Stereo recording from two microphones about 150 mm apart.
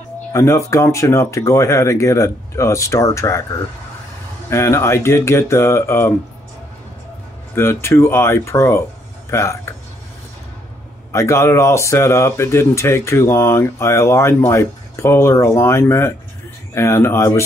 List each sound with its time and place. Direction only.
0.3 s speech: 20° left (ahead or behind)
4.5 s speech: 20° left (ahead or behind)
7.5 s speech: 15° left (ahead or behind)
11.1 s speech: 20° left (ahead or behind)